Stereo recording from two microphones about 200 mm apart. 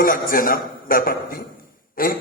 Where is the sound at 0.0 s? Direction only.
45° left (ahead or behind).